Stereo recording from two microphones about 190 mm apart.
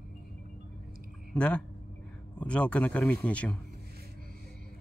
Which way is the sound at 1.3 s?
5° left (ahead or behind).